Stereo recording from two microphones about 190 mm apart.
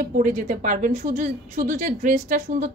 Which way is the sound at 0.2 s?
40° right (ahead or behind).